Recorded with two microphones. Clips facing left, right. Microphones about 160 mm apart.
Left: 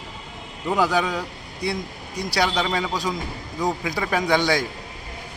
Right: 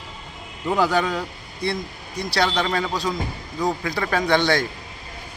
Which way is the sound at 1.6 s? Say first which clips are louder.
Right 1 dB; 15° left (ahead or behind).